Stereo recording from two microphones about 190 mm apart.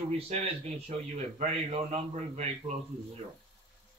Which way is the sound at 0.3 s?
35° right (ahead or behind).